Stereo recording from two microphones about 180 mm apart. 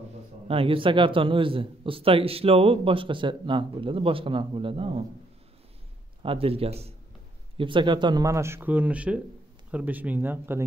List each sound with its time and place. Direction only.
0.5 s a man's voice: 30° right (ahead or behind)
6.2 s a man's voice: 30° right (ahead or behind); by 10.6 s 10° right (ahead or behind)